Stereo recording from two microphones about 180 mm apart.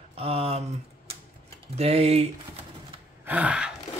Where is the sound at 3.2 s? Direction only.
10° right (ahead or behind).